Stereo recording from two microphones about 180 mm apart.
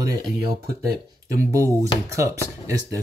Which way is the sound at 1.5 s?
15° right (ahead or behind).